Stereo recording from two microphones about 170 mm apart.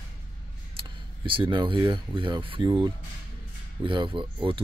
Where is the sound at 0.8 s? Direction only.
30° right (ahead or behind).